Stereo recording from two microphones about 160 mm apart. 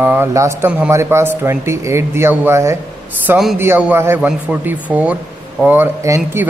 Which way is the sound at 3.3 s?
Centre (ahead or behind).